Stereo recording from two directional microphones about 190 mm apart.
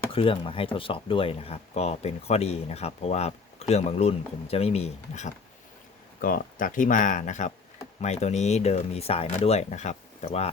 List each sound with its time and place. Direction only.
0.1 s speech: 30° left (ahead or behind)
6.2 s speech: 45° left (ahead or behind)